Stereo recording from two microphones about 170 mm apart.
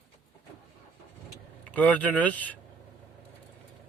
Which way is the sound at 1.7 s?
10° left (ahead or behind).